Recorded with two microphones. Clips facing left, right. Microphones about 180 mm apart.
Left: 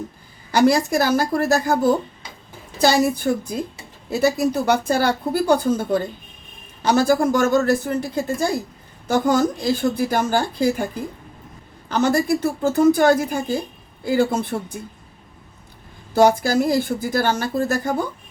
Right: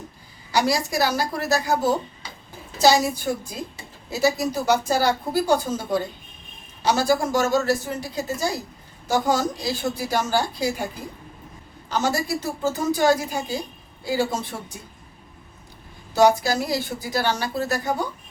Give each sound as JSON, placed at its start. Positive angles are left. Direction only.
{"t": 0.5, "sound": "speech", "side_deg": 50}
{"t": 11.9, "sound": "speech", "side_deg": 55}
{"t": 16.1, "sound": "speech", "side_deg": 50}